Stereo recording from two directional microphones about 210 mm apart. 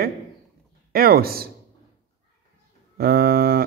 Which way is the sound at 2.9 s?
45° right (ahead or behind).